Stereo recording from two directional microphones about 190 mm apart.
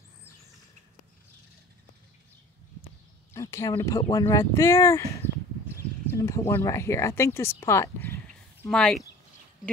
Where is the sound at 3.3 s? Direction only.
15° left (ahead or behind).